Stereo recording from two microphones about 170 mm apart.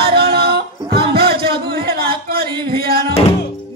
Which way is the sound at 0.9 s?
70° right (ahead or behind).